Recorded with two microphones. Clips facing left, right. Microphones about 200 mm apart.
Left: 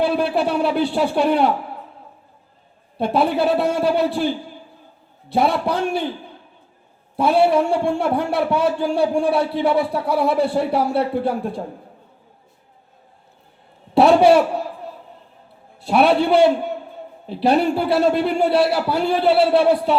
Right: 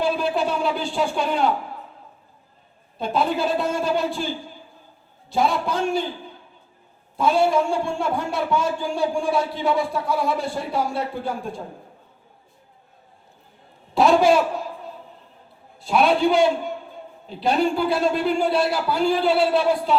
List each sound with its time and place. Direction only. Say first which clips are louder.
0.0 s speech: left 3 dB; 65° left (ahead or behind)
3.0 s a man's voice: left 4 dB; 65° left (ahead or behind)
5.3 s a man's voice: left 3 dB; 65° left (ahead or behind)
7.2 s a man's voice: left 3 dB; 65° left (ahead or behind)
13.9 s a man's voice: left 4 dB; 65° left (ahead or behind)
15.8 s a man's voice: left 3 dB; 65° left (ahead or behind)